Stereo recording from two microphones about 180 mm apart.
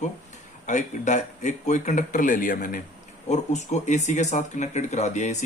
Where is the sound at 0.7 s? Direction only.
40° left (ahead or behind).